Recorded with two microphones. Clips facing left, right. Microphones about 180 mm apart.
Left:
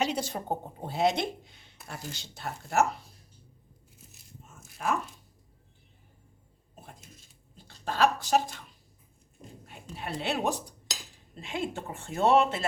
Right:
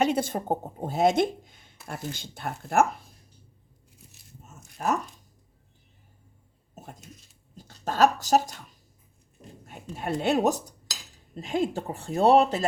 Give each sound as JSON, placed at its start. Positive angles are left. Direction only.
{"t": 0.0, "sound": "a woman's voice", "side_deg": -50}
{"t": 4.8, "sound": "speech", "side_deg": -40}
{"t": 7.5, "sound": "speech", "side_deg": -45}
{"t": 9.6, "sound": "speech", "side_deg": -45}